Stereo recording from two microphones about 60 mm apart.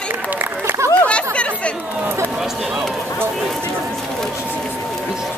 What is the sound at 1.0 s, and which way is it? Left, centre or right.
Chatter, centre.